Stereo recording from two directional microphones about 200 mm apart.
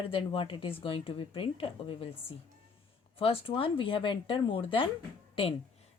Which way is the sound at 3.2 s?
25° left (ahead or behind).